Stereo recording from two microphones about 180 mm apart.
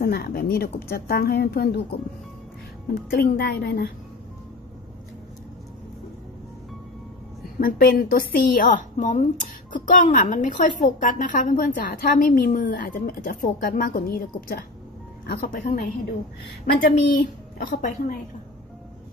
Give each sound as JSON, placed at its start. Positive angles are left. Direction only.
{"t": 0.0, "sound": "speech", "side_deg": 60}
{"t": 7.5, "sound": "a woman's voice", "side_deg": 55}